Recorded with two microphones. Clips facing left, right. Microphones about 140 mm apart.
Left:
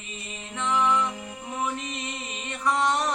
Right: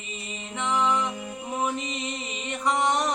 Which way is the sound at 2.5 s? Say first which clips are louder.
Even; 15° right (ahead or behind).